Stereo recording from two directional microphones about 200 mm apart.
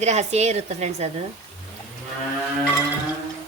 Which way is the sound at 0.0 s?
35° right (ahead or behind).